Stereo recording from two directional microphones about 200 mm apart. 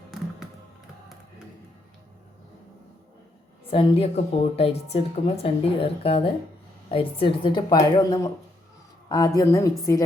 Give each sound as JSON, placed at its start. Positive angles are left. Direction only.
{"t": 3.7, "sound": "a woman's voice", "side_deg": 30}